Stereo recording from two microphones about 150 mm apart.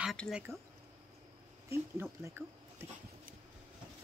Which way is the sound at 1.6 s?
15° right (ahead or behind).